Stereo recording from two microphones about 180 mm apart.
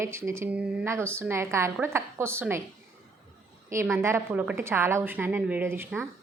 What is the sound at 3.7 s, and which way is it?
A woman's voice, 15° right (ahead or behind).